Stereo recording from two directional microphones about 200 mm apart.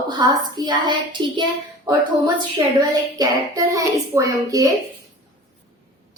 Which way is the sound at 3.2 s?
15° right (ahead or behind).